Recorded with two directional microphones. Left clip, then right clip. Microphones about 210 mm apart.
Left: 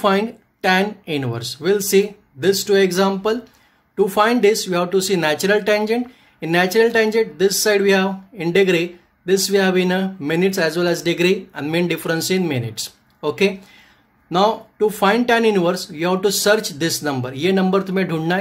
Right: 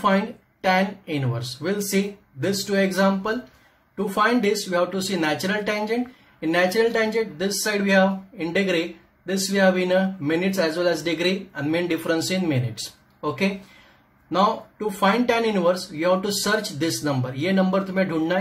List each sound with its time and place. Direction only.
0.0 s speech: 50° left (ahead or behind)
14.3 s speech: 50° left (ahead or behind)